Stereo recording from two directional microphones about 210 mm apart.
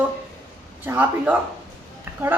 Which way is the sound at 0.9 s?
5° right (ahead or behind).